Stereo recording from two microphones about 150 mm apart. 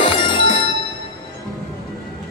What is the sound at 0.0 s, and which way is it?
Music, 35° left (ahead or behind).